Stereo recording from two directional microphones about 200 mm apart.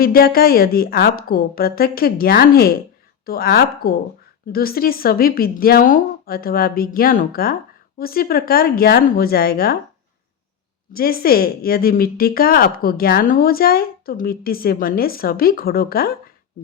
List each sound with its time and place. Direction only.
0.0 s speech: 50° left (ahead or behind)
10.9 s speech: 50° left (ahead or behind)